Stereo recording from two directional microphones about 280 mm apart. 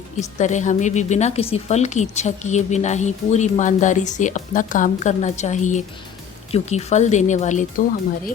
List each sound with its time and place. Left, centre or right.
0.2 s a woman's voice: left